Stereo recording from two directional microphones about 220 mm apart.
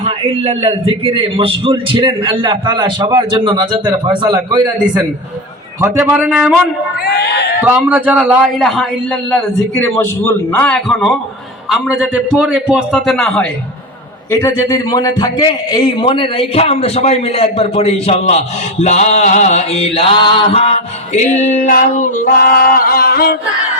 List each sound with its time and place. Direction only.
0.0 s a man's voice: 30° right (ahead or behind)
5.8 s speech: 10° right (ahead or behind)
7.0 s speech: 50° left (ahead or behind)
7.6 s a man's voice: 5° right (ahead or behind)
14.3 s a man's voice: 15° left (ahead or behind); by 23.3 s 45° left (ahead or behind)